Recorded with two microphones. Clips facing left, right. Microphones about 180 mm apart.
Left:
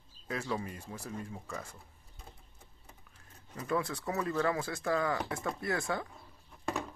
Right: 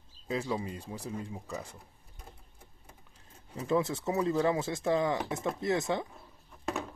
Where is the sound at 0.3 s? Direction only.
15° right (ahead or behind).